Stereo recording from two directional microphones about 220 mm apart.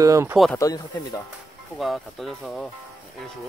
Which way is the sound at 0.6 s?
15° left (ahead or behind).